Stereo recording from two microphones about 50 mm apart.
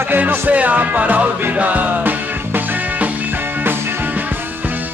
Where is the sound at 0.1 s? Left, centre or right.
Right.